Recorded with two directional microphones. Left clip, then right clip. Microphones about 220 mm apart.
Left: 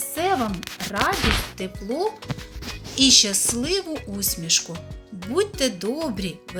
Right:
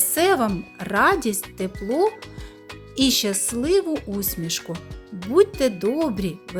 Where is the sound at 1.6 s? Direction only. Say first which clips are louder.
Right 4 dB; 45° right (ahead or behind).